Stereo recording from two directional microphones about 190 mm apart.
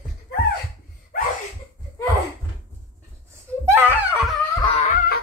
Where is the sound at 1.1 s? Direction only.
50° left (ahead or behind).